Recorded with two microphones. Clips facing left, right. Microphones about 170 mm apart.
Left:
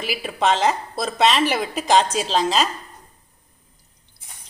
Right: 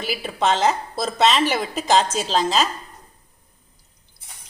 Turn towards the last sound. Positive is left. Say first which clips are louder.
# even
turn(degrees=0)  # may be behind; listen again after turning